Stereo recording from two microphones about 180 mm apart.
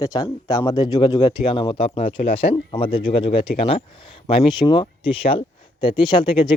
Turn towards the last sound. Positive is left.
turn(degrees=25)  # may be behind; listen again after turning